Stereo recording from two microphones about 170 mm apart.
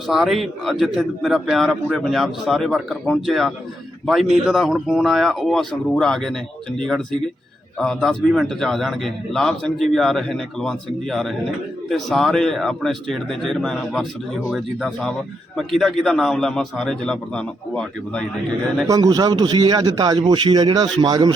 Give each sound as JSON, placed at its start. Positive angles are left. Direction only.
{"t": 0.1, "sound": "a man's voice", "side_deg": 0}
{"t": 18.9, "sound": "a man's voice", "side_deg": -20}